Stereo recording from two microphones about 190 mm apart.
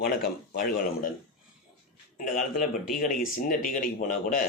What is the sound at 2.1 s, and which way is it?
A man's voice, 45° left (ahead or behind).